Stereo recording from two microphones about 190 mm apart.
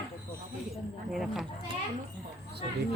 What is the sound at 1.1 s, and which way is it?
Speech, centre (ahead or behind).